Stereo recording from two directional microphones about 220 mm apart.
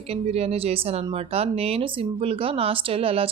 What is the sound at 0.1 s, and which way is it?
Speech, 30° right (ahead or behind).